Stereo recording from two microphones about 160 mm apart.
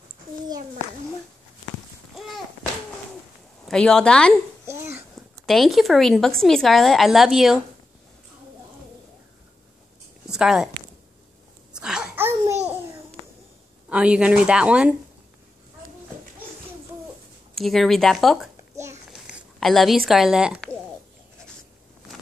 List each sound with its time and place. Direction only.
2.1 s babbling: centre (ahead or behind)
3.6 s a woman's voice: 5° left (ahead or behind)
4.6 s babbling: 15° right (ahead or behind)
5.1 s a woman's voice: centre (ahead or behind)
10.3 s speech: 5° right (ahead or behind)
11.7 s a sound: 5° right (ahead or behind)
13.8 s a woman's voice: 5° right (ahead or behind)
17.6 s a woman's voice: centre (ahead or behind)
18.8 s a sound: 20° right (ahead or behind)
19.1 s speech: 5° right (ahead or behind)